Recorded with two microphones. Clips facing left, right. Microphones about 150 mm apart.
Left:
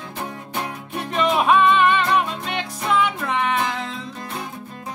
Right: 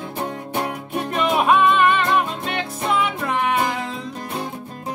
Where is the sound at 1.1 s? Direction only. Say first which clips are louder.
Even; centre (ahead or behind).